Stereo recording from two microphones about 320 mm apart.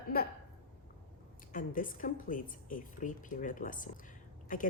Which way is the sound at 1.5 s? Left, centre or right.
Left.